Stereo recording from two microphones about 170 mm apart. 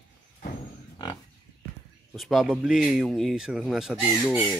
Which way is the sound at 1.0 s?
25° left (ahead or behind).